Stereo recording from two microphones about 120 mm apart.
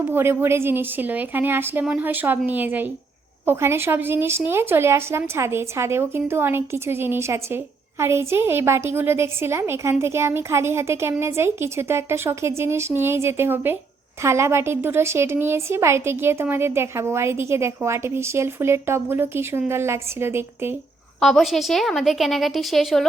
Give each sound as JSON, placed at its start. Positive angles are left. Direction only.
{"t": 0.0, "sound": "a woman's voice", "side_deg": -20}
{"t": 21.2, "sound": "a woman's voice", "side_deg": 0}